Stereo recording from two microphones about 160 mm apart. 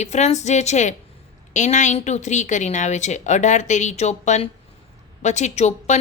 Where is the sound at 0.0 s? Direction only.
45° left (ahead or behind).